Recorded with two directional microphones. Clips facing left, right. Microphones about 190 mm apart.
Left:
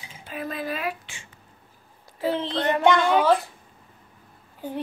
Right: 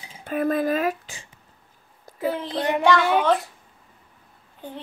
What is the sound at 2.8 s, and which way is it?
Speech, 20° left (ahead or behind).